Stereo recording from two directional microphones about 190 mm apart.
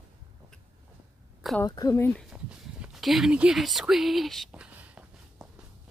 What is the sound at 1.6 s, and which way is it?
Speech, 20° left (ahead or behind).